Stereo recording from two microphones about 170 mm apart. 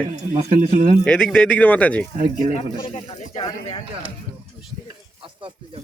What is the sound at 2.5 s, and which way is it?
Speech, 35° left (ahead or behind).